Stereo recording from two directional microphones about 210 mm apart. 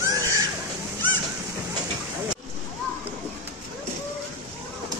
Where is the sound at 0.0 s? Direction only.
15° right (ahead or behind).